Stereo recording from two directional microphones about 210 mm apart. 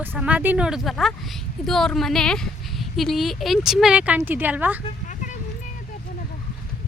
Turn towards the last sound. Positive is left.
turn(degrees=35)  # may be behind; listen again after turning